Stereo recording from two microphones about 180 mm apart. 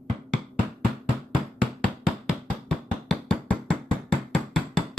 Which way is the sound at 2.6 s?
5° left (ahead or behind).